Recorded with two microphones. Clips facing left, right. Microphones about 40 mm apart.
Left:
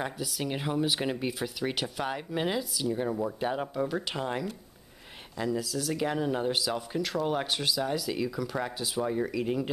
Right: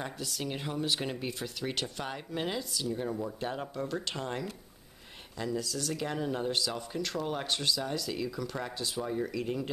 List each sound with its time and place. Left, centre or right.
0.0 s speech: centre
3.0 s speech: centre